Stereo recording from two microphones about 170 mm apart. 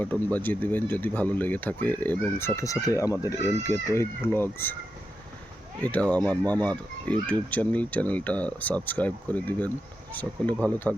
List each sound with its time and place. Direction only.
0.0 s speech: 10° left (ahead or behind)
5.8 s speech: 10° left (ahead or behind)